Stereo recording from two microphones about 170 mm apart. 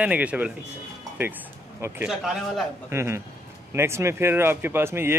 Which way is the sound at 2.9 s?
15° right (ahead or behind).